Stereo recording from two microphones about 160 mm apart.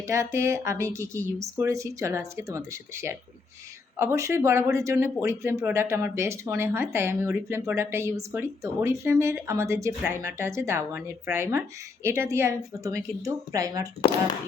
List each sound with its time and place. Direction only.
0.1 s a woman's voice: 15° right (ahead or behind)